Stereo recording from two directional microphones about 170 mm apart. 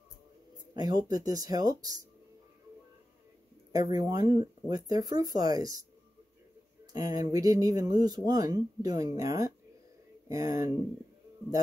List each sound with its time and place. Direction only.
0.7 s speech: 20° right (ahead or behind)
3.7 s speech: 20° right (ahead or behind)
6.9 s speech: 20° right (ahead or behind)